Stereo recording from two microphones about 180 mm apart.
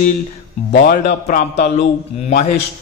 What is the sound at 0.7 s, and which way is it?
A man's voice, 45° left (ahead or behind).